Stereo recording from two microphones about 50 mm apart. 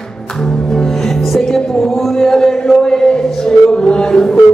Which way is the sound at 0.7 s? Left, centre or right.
Centre.